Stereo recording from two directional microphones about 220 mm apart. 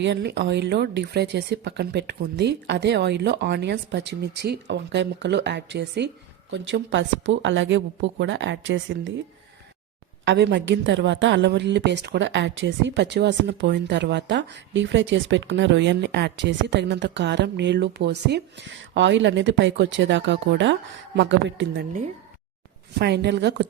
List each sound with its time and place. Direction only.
0.0 s a woman's voice: 50° right (ahead or behind)
10.2 s a woman's voice: 50° right (ahead or behind)
23.0 s a woman's voice: 50° right (ahead or behind)